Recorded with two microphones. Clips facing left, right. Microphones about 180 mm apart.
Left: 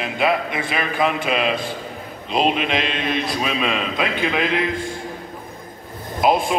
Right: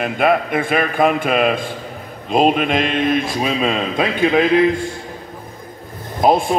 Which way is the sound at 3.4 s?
30° right (ahead or behind).